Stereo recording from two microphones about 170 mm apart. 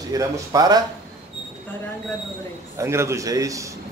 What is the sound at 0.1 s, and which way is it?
Speech, 20° right (ahead or behind).